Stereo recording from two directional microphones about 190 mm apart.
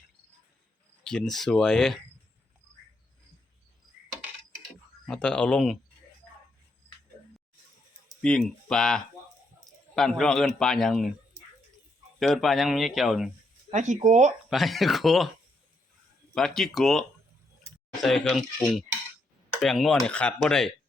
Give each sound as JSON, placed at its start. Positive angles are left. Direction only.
{"t": 1.0, "sound": "a man's voice", "side_deg": 5}
{"t": 5.0, "sound": "a man's voice", "side_deg": 5}
{"t": 8.2, "sound": "a man's voice", "side_deg": 5}
{"t": 12.2, "sound": "a man's voice", "side_deg": 0}
{"t": 13.7, "sound": "speech", "side_deg": -40}
{"t": 14.5, "sound": "a man's voice", "side_deg": 0}
{"t": 16.3, "sound": "a man's voice", "side_deg": 5}